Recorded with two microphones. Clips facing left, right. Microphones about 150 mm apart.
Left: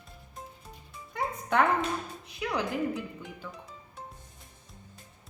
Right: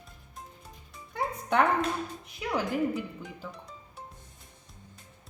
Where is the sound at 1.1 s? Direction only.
Centre (ahead or behind).